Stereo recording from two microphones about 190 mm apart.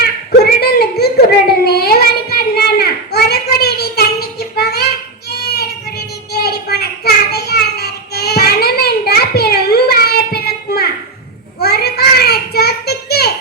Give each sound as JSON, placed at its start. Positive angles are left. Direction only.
{"t": 0.0, "sound": "child singing", "side_deg": 55}
{"t": 6.3, "sound": "child singing", "side_deg": 55}
{"t": 11.6, "sound": "a sound", "side_deg": 55}